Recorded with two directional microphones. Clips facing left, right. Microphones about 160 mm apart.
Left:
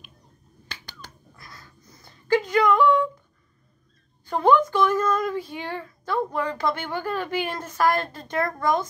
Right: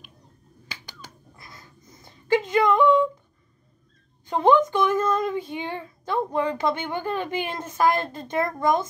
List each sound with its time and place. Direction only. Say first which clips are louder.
0.7 s finger snapping: even; 10° right (ahead or behind)
1.3 s a sound: even; 20° right (ahead or behind)
4.3 s speech: right 1 dB; 20° right (ahead or behind)